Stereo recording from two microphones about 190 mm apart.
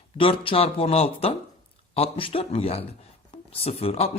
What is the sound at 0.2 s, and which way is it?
Speech, 30° left (ahead or behind).